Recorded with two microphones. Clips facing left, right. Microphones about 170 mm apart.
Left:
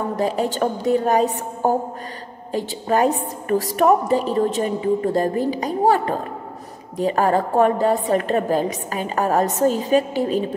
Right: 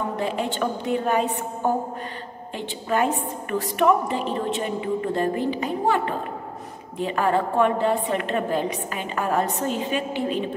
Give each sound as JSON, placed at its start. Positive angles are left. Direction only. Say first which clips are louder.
{"t": 0.1, "sound": "a woman's voice", "louder": "left 5 dB", "side_deg": 40}